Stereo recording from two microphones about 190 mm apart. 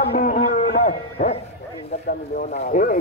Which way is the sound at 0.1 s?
45° left (ahead or behind).